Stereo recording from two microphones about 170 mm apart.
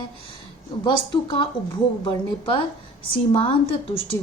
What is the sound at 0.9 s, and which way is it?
A woman's voice, 30° left (ahead or behind).